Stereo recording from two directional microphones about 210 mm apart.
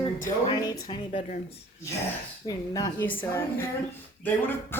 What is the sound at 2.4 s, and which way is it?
Speech, 15° left (ahead or behind).